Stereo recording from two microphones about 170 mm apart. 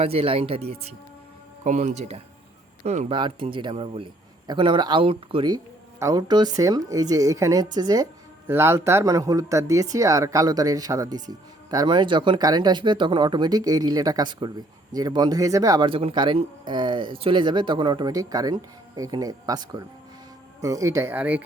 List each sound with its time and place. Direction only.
0.0 s speech: 35° right (ahead or behind)
3.1 s speech: 30° right (ahead or behind); by 21.4 s 10° right (ahead or behind)